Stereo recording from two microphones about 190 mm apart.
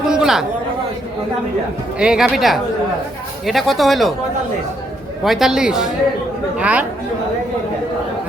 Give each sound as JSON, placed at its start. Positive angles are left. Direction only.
{"t": 0.1, "sound": "chatter", "side_deg": -5}
{"t": 2.0, "sound": "speech", "side_deg": -5}
{"t": 5.2, "sound": "speech", "side_deg": 0}